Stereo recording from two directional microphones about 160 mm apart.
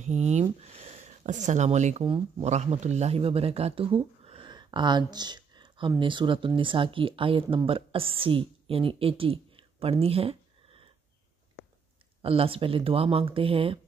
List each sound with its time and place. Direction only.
0.0 s speech: 45° right (ahead or behind)
2.0 s speech: 35° right (ahead or behind)
2.5 s speech: 45° right (ahead or behind)
12.2 s speech: 35° right (ahead or behind)